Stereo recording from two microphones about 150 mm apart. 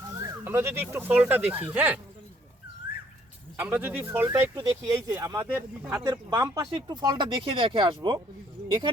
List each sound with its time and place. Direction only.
0.4 s speech: 15° right (ahead or behind)
3.6 s speech: 15° right (ahead or behind); by 8.2 s 35° right (ahead or behind)